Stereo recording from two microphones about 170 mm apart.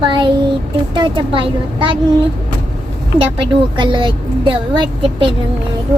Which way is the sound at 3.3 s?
30° right (ahead or behind).